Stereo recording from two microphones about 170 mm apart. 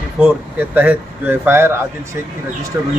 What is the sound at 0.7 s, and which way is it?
Speech, 10° right (ahead or behind).